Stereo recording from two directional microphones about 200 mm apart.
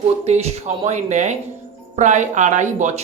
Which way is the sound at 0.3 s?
35° right (ahead or behind).